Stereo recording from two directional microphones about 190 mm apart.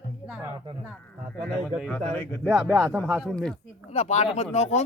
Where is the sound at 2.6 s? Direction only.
10° right (ahead or behind).